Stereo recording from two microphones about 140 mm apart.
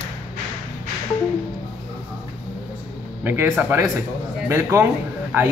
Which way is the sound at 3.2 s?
15° right (ahead or behind).